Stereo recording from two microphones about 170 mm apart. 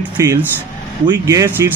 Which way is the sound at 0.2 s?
15° right (ahead or behind).